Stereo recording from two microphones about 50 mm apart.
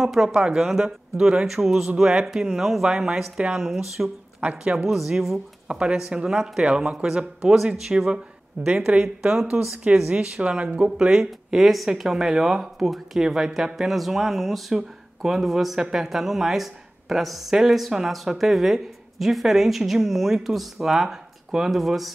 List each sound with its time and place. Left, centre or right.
0.0 s speech: centre
0.4 s speech: centre
4.4 s a woman's voice: right
4.8 s speech: centre
5.7 s speech: centre
6.6 s speech: right
11.1 s speech: centre